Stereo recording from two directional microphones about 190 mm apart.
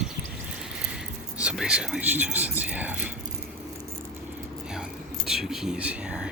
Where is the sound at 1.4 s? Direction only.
5° right (ahead or behind).